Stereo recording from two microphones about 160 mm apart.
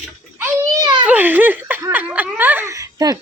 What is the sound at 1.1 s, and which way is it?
Speech, 10° right (ahead or behind).